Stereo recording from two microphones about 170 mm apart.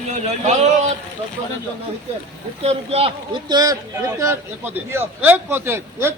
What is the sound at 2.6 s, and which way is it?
Speech, 35° right (ahead or behind).